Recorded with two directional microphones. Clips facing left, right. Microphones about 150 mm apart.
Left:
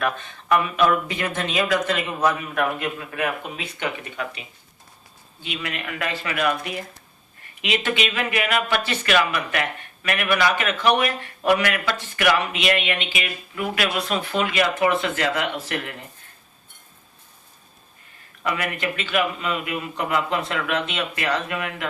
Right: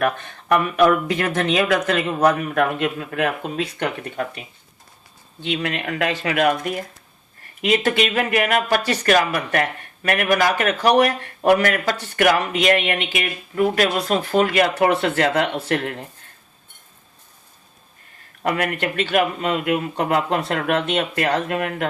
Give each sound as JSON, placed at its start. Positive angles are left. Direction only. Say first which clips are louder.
{"t": 0.0, "sound": "speech", "louder": "right 4 dB", "side_deg": -55}
{"t": 3.4, "sound": "speech", "louder": "right 5 dB", "side_deg": -50}
{"t": 5.5, "sound": "speech", "louder": "right 5 dB", "side_deg": -50}
{"t": 18.4, "sound": "speech", "louder": "right 4 dB", "side_deg": -50}